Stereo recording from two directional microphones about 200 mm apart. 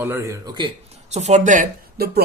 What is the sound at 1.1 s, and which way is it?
Speech, 35° right (ahead or behind).